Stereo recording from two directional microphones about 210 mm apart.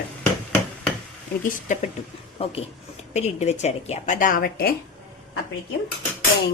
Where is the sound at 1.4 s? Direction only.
40° left (ahead or behind).